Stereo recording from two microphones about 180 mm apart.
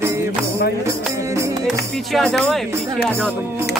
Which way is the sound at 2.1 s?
5° left (ahead or behind).